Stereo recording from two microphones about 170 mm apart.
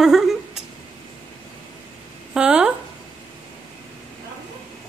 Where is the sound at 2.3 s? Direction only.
5° right (ahead or behind).